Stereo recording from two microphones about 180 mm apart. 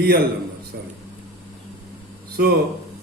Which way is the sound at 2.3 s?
60° right (ahead or behind).